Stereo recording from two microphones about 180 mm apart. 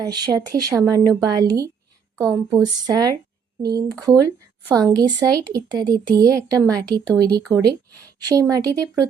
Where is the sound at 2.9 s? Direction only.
20° right (ahead or behind).